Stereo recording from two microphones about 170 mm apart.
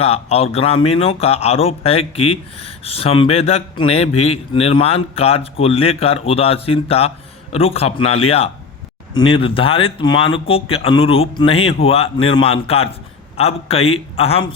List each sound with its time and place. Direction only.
0.0 s a man's voice: 35° left (ahead or behind)